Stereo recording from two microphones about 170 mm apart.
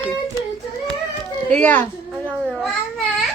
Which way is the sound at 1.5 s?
10° left (ahead or behind).